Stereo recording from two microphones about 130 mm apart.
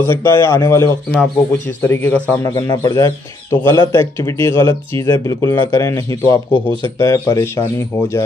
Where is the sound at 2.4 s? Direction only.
25° left (ahead or behind).